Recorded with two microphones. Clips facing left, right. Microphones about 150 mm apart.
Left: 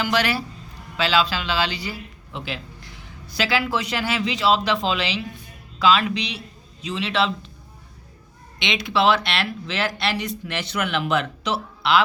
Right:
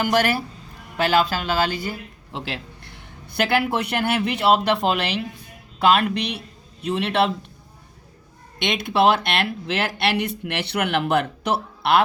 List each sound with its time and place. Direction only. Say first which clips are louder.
0.0 s a man's voice: right 2 dB; 50° right (ahead or behind)
8.5 s a man's voice: right 2 dB; 50° right (ahead or behind)